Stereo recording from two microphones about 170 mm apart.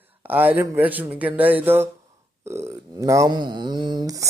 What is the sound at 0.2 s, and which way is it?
Speech, 10° right (ahead or behind).